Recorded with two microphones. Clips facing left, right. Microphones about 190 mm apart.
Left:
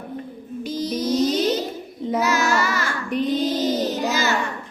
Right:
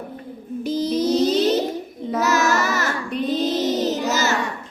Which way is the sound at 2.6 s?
45° right (ahead or behind).